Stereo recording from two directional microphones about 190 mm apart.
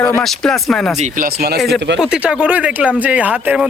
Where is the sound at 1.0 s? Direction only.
50° right (ahead or behind).